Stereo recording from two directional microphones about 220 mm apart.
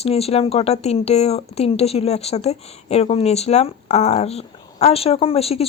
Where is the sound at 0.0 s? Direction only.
25° left (ahead or behind).